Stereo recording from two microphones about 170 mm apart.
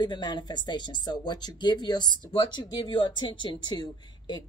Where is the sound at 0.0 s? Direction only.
25° left (ahead or behind).